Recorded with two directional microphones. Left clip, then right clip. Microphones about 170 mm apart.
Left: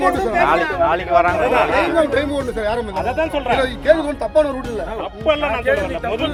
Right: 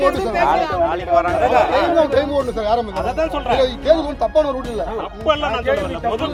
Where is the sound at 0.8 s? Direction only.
70° left (ahead or behind).